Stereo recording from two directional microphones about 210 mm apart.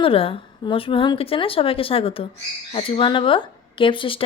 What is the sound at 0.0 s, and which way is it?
Speech, 25° left (ahead or behind).